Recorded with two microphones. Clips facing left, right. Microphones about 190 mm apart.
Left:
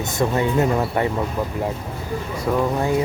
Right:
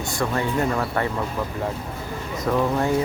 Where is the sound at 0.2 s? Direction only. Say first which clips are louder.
Left 4 dB; 20° left (ahead or behind).